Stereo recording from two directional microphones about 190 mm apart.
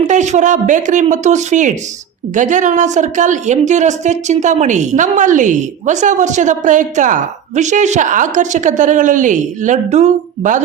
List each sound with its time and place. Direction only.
0.1 s a woman's voice: 40° right (ahead or behind)